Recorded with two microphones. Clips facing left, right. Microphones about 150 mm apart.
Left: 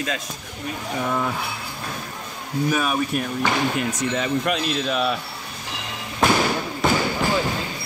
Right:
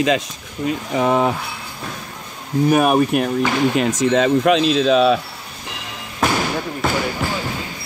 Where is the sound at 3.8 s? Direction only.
90° right.